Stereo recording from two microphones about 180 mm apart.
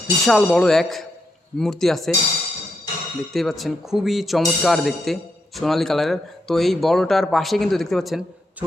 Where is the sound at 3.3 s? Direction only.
Centre (ahead or behind).